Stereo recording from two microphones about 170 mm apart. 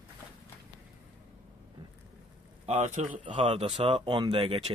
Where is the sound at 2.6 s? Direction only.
40° right (ahead or behind).